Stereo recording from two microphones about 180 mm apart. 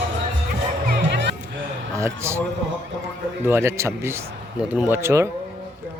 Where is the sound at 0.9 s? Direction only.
65° right (ahead or behind).